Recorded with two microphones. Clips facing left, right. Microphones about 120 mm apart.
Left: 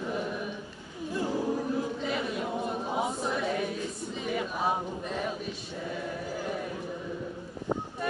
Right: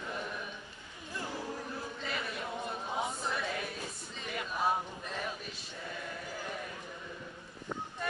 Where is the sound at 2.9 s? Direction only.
10° left (ahead or behind).